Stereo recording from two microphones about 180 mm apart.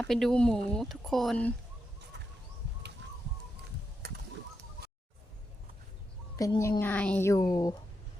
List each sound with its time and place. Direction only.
0.1 s speech: centre (ahead or behind)
2.1 s bird: 70° right (ahead or behind)
4.0 s a sound: 60° right (ahead or behind)
6.3 s a woman's voice: 20° left (ahead or behind)